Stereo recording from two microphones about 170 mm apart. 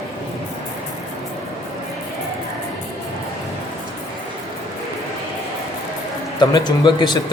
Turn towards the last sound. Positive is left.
turn(degrees=25)  # may be behind; listen again after turning